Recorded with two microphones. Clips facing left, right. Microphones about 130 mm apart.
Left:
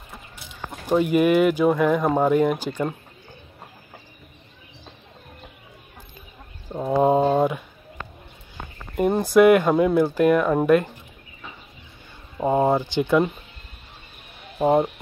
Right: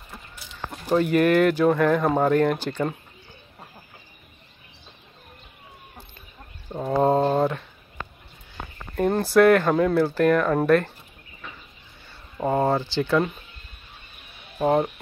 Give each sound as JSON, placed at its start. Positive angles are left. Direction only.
{"t": 0.7, "sound": "speech", "side_deg": 10}
{"t": 6.9, "sound": "a sound", "side_deg": 10}
{"t": 8.9, "sound": "speech", "side_deg": 10}
{"t": 12.4, "sound": "speech", "side_deg": 15}
{"t": 14.6, "sound": "speech", "side_deg": 10}